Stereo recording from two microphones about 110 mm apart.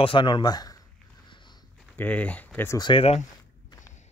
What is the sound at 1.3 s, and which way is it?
Sniff, 45° left (ahead or behind).